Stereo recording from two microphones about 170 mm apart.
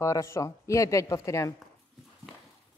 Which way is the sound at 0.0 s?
15° left (ahead or behind).